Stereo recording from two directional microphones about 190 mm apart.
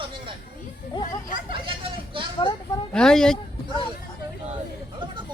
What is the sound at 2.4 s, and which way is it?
Speech, 25° left (ahead or behind).